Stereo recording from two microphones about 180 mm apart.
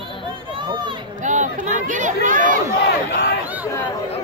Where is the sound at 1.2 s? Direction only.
45° right (ahead or behind).